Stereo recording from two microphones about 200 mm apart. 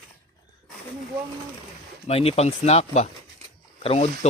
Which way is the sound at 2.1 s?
30° left (ahead or behind).